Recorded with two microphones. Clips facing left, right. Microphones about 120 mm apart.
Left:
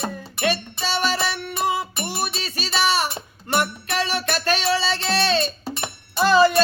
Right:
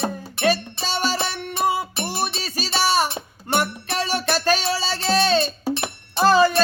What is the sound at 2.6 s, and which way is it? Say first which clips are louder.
Music: right 1 dB; 40° right (ahead or behind).